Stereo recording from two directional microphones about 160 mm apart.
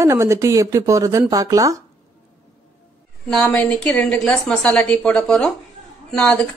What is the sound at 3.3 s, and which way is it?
A woman's voice, 5° left (ahead or behind).